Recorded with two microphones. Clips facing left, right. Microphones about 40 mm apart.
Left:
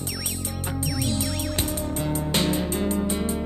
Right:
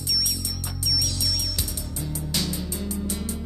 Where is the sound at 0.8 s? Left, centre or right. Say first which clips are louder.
Left 1 dB; left.